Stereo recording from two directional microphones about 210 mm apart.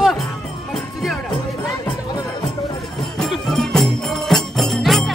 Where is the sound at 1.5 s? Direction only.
15° left (ahead or behind).